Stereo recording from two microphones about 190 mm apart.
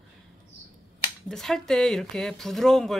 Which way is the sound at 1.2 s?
Centre (ahead or behind).